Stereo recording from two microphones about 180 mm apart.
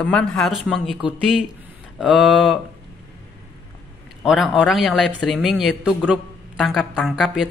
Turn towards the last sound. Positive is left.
turn(degrees=0)  # may be behind; listen again after turning